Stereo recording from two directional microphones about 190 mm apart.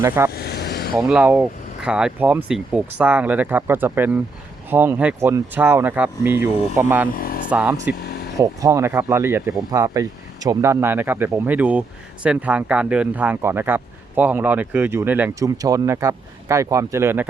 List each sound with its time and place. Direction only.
0.3 s vehicle: 55° left (ahead or behind)
0.9 s speech: 5° right (ahead or behind)
7.1 s a sound: 50° left (ahead or behind)
7.5 s speech: 10° right (ahead or behind)